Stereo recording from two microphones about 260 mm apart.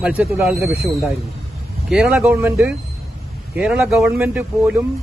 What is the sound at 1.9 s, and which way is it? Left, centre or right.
Speech, centre.